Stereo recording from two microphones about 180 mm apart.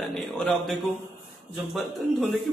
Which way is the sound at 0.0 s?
5° left (ahead or behind).